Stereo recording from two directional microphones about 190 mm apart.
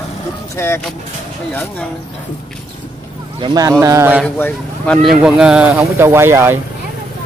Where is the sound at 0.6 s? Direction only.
15° left (ahead or behind).